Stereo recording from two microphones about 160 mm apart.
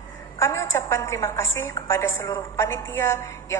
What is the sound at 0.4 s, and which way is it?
A woman's voice, 15° left (ahead or behind).